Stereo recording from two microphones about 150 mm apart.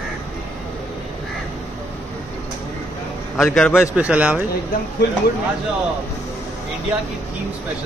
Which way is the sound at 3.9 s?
10° right (ahead or behind).